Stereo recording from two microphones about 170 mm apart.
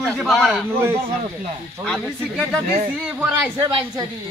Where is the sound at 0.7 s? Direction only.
15° right (ahead or behind).